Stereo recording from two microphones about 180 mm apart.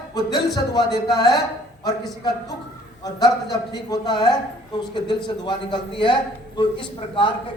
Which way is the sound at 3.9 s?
25° left (ahead or behind).